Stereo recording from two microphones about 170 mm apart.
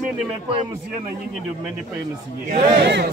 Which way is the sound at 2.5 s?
90° right.